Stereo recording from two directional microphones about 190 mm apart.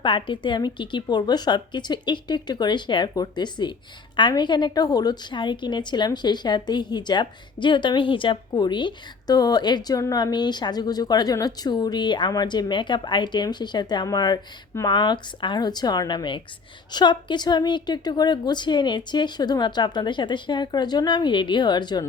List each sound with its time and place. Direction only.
0.0 s a woman's voice: 25° left (ahead or behind)